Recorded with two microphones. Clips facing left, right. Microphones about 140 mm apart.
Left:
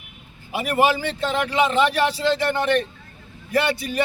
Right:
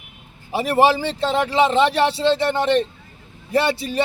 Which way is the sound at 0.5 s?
35° right (ahead or behind).